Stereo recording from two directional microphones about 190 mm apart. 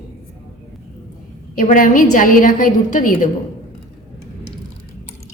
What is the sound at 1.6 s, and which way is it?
A woman's voice, 45° left (ahead or behind).